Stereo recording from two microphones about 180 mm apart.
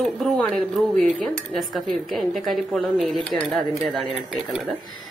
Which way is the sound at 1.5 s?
Centre (ahead or behind).